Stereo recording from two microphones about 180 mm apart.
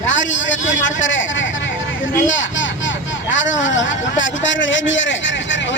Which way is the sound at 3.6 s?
90° left.